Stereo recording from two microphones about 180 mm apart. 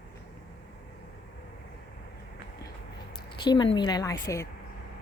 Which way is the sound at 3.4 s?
25° left (ahead or behind).